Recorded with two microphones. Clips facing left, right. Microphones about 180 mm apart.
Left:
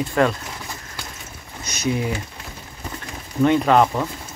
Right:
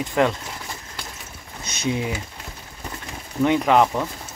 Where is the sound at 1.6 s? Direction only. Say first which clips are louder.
Left 2 dB; 25° right (ahead or behind).